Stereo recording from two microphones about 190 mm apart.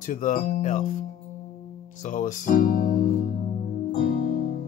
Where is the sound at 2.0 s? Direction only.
40° left (ahead or behind).